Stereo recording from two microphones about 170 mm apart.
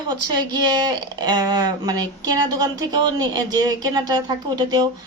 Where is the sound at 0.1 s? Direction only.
25° right (ahead or behind).